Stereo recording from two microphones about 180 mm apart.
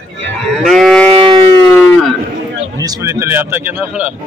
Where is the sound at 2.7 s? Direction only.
20° right (ahead or behind).